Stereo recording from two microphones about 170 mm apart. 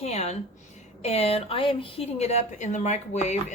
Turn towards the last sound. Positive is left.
turn(degrees=45)  # may be behind; listen again after turning